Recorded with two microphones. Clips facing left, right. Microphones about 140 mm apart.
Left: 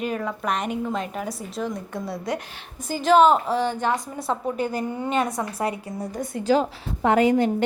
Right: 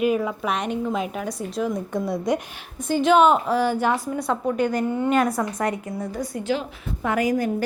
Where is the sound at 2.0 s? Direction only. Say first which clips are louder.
Right 5 dB; 15° right (ahead or behind).